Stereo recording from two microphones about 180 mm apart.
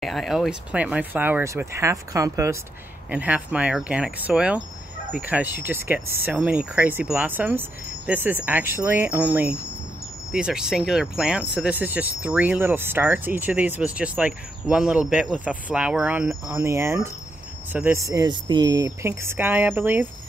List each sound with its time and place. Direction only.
0.0 s speech: centre (ahead or behind)